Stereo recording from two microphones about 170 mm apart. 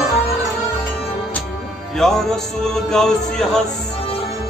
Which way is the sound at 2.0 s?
Centre (ahead or behind).